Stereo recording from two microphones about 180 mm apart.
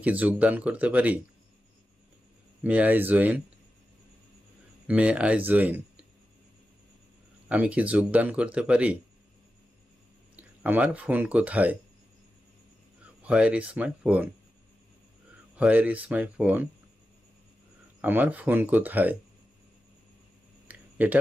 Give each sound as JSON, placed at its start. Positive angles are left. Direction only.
{"t": 0.0, "sound": "speech", "side_deg": -10}
{"t": 2.6, "sound": "speech", "side_deg": -10}
{"t": 4.9, "sound": "speech", "side_deg": -5}
{"t": 7.4, "sound": "speech", "side_deg": -5}
{"t": 10.3, "sound": "speech", "side_deg": -10}
{"t": 13.2, "sound": "speech", "side_deg": -5}
{"t": 15.5, "sound": "speech", "side_deg": -10}
{"t": 18.0, "sound": "speech", "side_deg": -10}
{"t": 20.7, "sound": "a sound", "side_deg": -10}